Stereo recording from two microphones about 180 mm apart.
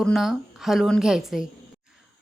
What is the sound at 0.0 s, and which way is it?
A woman's voice, centre (ahead or behind).